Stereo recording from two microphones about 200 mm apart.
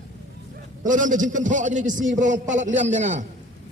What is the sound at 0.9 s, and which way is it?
A man's voice, 40° right (ahead or behind).